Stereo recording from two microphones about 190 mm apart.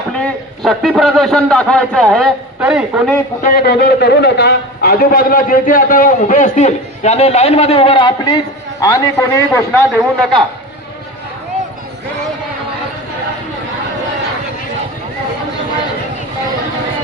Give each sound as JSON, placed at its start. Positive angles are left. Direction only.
{"t": 0.1, "sound": "a man's voice", "side_deg": 0}
{"t": 3.4, "sound": "a man's voice", "side_deg": 50}